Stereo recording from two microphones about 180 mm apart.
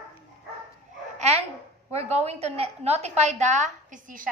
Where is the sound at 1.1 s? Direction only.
35° right (ahead or behind).